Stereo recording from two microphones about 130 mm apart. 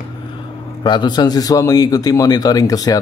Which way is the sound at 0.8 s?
35° left (ahead or behind).